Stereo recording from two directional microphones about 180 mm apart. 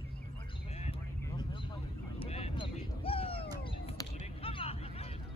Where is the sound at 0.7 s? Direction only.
35° left (ahead or behind).